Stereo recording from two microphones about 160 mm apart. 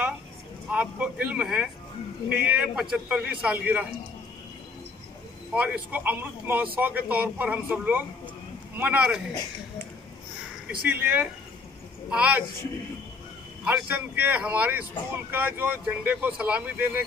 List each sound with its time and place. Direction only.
0.7 s speech: 5° right (ahead or behind)
5.5 s speech: 10° right (ahead or behind)
10.9 s speech: 10° right (ahead or behind)
13.7 s speech: 10° right (ahead or behind)